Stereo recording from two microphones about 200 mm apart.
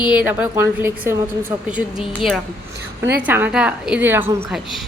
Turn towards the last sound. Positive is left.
turn(degrees=-5)  # may be behind; listen again after turning